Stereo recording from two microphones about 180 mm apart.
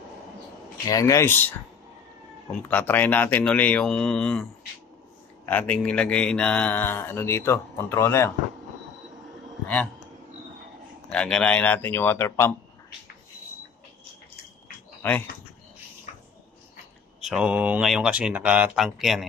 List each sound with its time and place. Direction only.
0.8 s speech: 20° left (ahead or behind)
2.7 s speech: 10° left (ahead or behind)
11.1 s speech: 5° left (ahead or behind)
15.0 s speech: 10° left (ahead or behind)
17.2 s speech: 5° right (ahead or behind)